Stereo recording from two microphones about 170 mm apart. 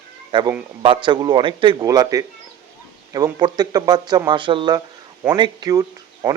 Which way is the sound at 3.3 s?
25° right (ahead or behind).